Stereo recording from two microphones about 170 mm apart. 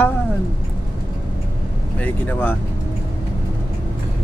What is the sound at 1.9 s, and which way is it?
Speech, 10° left (ahead or behind).